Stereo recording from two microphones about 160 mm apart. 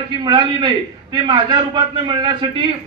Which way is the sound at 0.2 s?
30° right (ahead or behind).